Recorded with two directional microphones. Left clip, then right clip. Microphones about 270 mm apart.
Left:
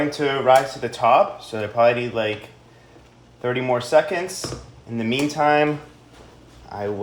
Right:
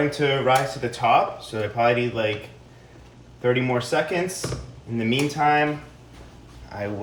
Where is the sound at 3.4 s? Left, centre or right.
Left.